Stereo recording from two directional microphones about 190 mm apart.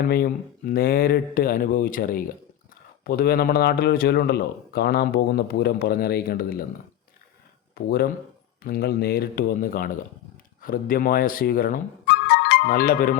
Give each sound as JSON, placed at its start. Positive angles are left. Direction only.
{"t": 0.0, "sound": "speech", "side_deg": 50}
{"t": 7.8, "sound": "speech", "side_deg": 55}